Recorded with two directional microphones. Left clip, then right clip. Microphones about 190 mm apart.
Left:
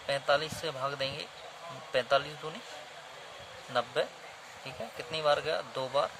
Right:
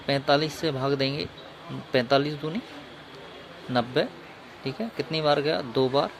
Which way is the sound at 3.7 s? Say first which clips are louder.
Right 6 dB; 15° right (ahead or behind).